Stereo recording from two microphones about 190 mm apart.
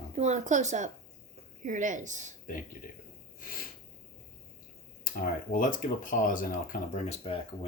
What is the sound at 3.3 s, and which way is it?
Snort, 50° left (ahead or behind).